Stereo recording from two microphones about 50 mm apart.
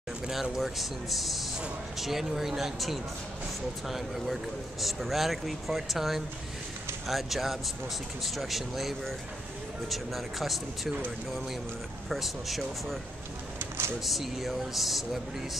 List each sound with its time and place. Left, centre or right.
0.3 s speech: centre
12.1 s speech: centre
13.6 s a sound: right
14.0 s speech: centre